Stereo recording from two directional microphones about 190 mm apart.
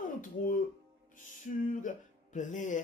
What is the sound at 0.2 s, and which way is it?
Music, 45° left (ahead or behind).